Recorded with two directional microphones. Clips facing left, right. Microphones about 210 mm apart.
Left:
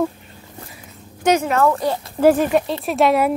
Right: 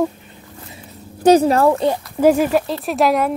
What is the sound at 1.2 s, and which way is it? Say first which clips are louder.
Speech: right 5 dB; 35° right (ahead or behind).